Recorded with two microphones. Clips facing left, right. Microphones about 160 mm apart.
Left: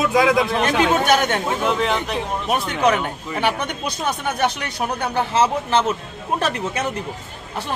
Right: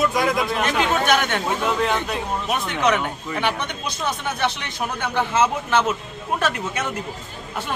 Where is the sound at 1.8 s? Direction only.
Centre (ahead or behind).